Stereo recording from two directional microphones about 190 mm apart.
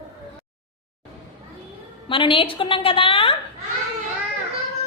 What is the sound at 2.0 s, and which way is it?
A woman's voice, 25° left (ahead or behind).